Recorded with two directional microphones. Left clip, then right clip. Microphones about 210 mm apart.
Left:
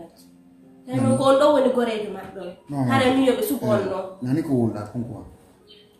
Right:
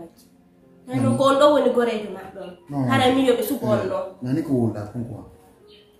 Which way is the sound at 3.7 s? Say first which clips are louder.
Even; 10° left (ahead or behind).